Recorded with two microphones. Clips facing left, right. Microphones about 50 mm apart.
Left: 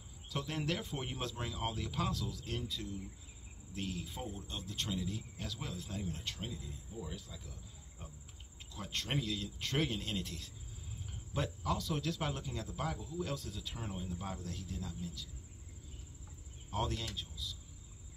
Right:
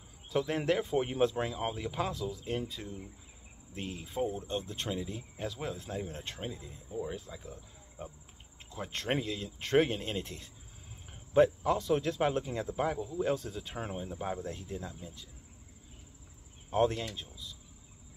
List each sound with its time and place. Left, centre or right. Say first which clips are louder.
0.3 s speech: right 8 dB; right
8.7 s speech: right 5 dB; right
14.1 s speech: right 7 dB; right
16.7 s speech: right 9 dB; right